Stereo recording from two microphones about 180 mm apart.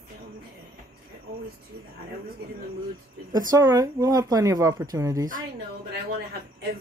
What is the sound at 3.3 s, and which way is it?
Speech, 20° right (ahead or behind).